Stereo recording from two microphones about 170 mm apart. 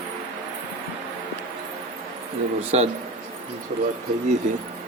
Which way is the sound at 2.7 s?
40° right (ahead or behind).